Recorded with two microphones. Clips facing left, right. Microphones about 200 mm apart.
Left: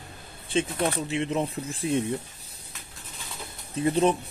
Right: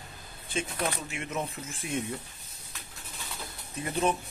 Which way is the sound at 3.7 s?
30° left (ahead or behind).